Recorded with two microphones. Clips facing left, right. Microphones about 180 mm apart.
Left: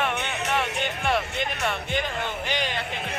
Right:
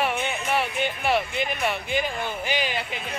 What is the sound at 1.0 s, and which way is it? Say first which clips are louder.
Music: right 1 dB; 5° right (ahead or behind).